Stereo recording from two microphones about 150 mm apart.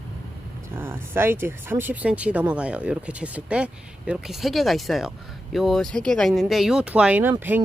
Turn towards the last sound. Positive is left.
turn(degrees=-15)  # may be behind; listen again after turning